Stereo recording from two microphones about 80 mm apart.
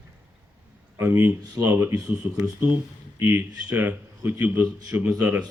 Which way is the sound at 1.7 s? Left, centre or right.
Right.